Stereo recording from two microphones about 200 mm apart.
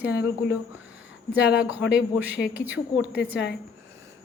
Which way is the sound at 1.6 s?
5° right (ahead or behind).